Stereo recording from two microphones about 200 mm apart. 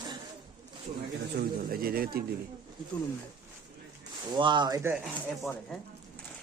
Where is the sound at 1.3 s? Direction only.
45° right (ahead or behind).